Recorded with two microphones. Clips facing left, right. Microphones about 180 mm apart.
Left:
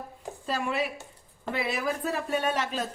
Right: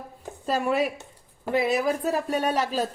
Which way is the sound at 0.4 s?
40° right (ahead or behind).